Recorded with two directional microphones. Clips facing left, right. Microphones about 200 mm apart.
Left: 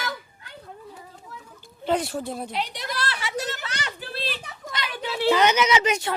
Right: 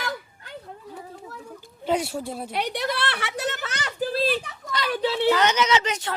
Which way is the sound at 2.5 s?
65° right (ahead or behind).